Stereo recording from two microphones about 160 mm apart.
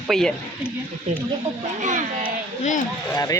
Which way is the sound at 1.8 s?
50° right (ahead or behind).